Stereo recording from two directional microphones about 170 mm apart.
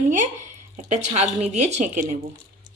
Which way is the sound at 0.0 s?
45° right (ahead or behind).